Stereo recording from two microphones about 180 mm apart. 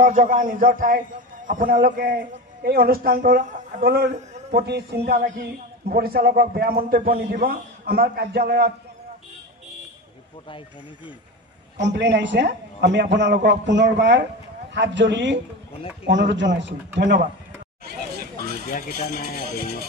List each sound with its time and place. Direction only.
0.0 s a man's voice: 45° right (ahead or behind)
3.8 s a man's voice: 65° right (ahead or behind)
4.1 s a man's voice: 40° right (ahead or behind)
4.6 s a man's voice: 65° right (ahead or behind)
11.8 s a man's voice: 75° right (ahead or behind)
18.7 s speech: 50° left (ahead or behind)
19.4 s a man's voice: 60° right (ahead or behind)